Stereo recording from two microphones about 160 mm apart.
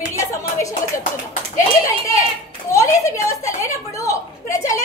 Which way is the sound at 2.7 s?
20° left (ahead or behind).